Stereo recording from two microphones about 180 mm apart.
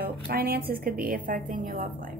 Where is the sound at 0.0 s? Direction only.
55° right (ahead or behind).